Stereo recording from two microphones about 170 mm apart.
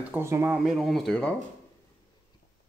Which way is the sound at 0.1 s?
15° right (ahead or behind).